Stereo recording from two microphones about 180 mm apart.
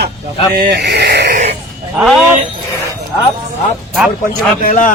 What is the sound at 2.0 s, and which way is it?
Speech, centre (ahead or behind).